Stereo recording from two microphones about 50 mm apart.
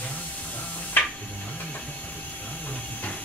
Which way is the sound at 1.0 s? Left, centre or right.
Left.